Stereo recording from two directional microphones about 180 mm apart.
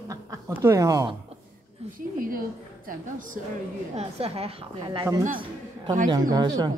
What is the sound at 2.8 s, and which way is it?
Speech, 45° right (ahead or behind).